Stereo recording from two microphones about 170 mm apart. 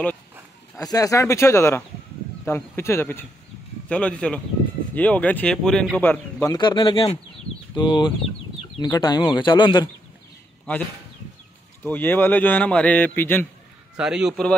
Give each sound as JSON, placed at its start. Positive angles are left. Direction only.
{"t": 0.7, "sound": "a man's voice", "side_deg": 20}
{"t": 6.5, "sound": "speech", "side_deg": 25}
{"t": 11.8, "sound": "a man's voice", "side_deg": 10}
{"t": 13.9, "sound": "a man's voice", "side_deg": -5}